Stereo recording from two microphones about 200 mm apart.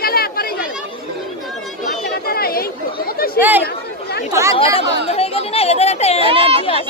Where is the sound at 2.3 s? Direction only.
50° left (ahead or behind).